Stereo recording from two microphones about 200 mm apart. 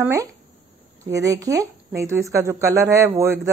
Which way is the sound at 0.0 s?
15° right (ahead or behind).